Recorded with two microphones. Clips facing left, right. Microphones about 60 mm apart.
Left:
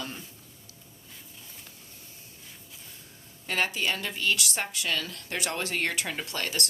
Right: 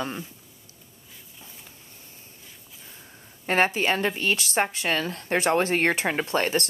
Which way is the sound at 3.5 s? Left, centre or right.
Right.